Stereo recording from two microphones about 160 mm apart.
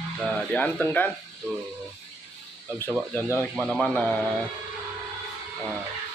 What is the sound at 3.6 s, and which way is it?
Speech, centre (ahead or behind).